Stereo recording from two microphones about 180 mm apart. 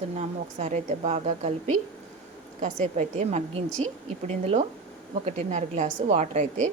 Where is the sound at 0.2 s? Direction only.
40° right (ahead or behind).